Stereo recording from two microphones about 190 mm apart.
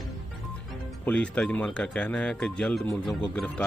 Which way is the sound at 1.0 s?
5° left (ahead or behind).